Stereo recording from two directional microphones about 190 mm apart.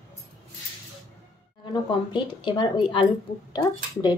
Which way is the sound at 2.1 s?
25° left (ahead or behind).